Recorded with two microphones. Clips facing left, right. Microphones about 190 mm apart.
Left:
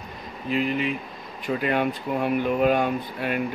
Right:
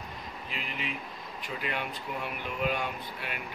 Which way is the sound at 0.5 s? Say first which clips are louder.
Left 15 dB; 50° left (ahead or behind).